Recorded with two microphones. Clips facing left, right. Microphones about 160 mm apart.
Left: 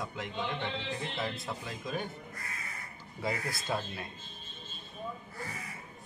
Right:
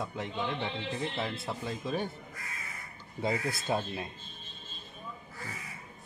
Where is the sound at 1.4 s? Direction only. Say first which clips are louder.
Right 3 dB; 30° right (ahead or behind).